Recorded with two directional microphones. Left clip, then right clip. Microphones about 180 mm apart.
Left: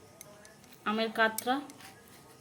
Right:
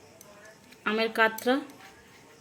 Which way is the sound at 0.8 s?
35° right (ahead or behind).